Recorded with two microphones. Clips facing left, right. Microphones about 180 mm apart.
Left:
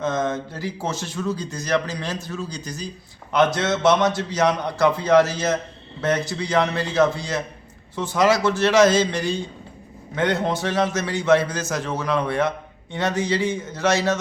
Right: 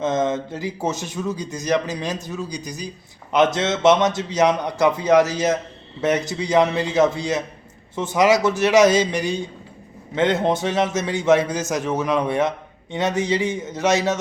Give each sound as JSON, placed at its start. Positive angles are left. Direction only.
{"t": 0.0, "sound": "a man's voice", "side_deg": -20}